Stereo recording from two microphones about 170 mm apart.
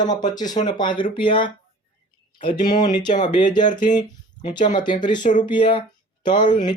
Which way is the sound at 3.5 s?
25° left (ahead or behind).